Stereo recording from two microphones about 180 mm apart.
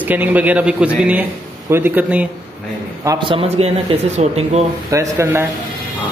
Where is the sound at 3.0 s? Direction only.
25° right (ahead or behind); by 4.6 s 40° right (ahead or behind).